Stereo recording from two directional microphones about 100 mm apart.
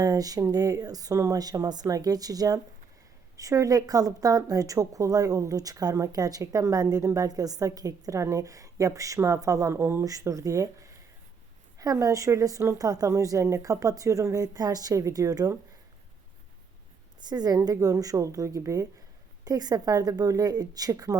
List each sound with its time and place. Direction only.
0.0 s a woman's voice: 40° right (ahead or behind)
11.8 s a woman's voice: 35° right (ahead or behind)
17.2 s a woman's voice: 40° right (ahead or behind)